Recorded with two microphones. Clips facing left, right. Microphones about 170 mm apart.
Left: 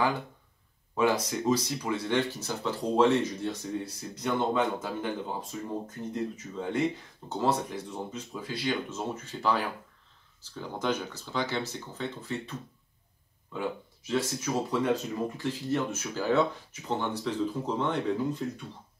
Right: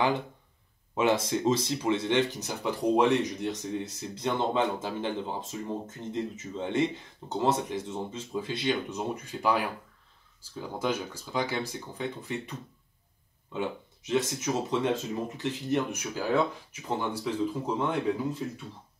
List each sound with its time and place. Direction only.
0.9 s speech: 25° right (ahead or behind); by 18.0 s 10° right (ahead or behind)